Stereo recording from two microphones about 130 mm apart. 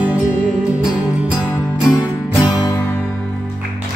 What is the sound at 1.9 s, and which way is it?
Music, 30° left (ahead or behind).